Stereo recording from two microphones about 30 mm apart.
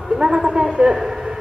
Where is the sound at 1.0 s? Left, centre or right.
Centre.